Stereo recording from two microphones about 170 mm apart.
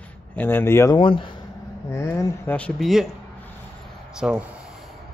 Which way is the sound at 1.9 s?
15° left (ahead or behind).